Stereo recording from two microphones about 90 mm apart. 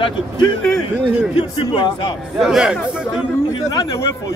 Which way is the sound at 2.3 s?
5° right (ahead or behind).